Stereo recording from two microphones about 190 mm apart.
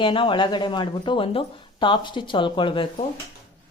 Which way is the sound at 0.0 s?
25° left (ahead or behind).